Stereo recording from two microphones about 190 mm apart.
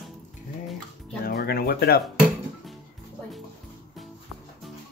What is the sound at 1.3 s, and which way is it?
Speech, 55° left (ahead or behind).